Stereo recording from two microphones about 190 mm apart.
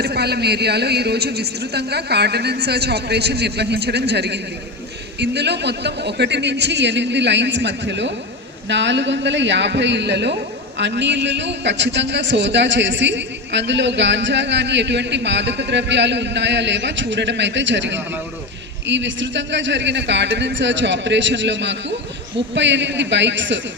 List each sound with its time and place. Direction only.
0.0 s a man's voice: 60° right (ahead or behind)